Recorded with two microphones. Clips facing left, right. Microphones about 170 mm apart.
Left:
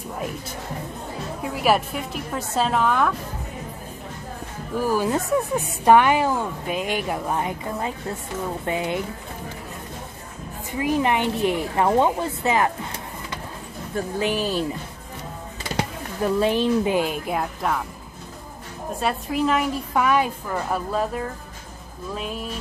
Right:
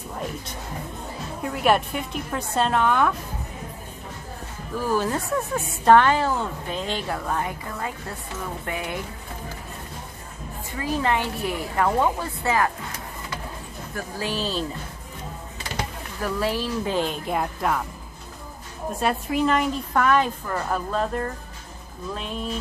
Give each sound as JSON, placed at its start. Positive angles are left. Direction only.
{"t": 1.4, "sound": "a woman's voice", "side_deg": 5}
{"t": 4.8, "sound": "speech", "side_deg": 10}
{"t": 10.7, "sound": "speech", "side_deg": 15}
{"t": 16.2, "sound": "speech", "side_deg": 20}
{"t": 18.9, "sound": "speech", "side_deg": 0}